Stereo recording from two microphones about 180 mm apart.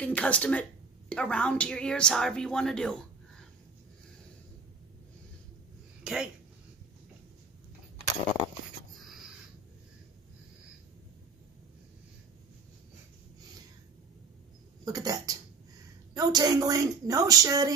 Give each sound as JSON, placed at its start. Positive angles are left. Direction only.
{"t": 0.0, "sound": "a woman's voice", "side_deg": 5}
{"t": 6.0, "sound": "speech", "side_deg": -5}
{"t": 14.9, "sound": "a woman's voice", "side_deg": -20}